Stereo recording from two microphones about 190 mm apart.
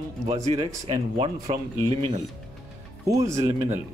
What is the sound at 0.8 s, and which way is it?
Speech, 30° right (ahead or behind).